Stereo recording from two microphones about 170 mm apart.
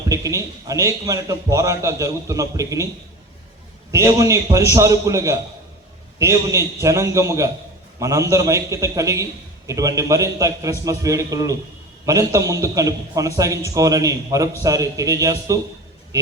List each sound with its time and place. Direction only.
0.1 s a man's voice: 20° right (ahead or behind)
3.9 s a man's voice: 20° right (ahead or behind)